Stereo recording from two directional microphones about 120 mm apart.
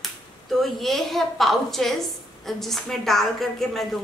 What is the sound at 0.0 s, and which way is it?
A woman's voice, centre (ahead or behind).